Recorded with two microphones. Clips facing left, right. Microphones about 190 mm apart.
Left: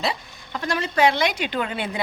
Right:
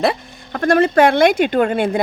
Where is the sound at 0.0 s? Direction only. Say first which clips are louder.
Right 9 dB; 55° right (ahead or behind).